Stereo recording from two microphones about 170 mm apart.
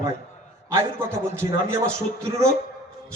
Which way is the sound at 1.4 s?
15° right (ahead or behind).